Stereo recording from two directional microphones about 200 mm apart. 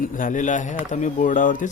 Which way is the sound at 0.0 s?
40° left (ahead or behind).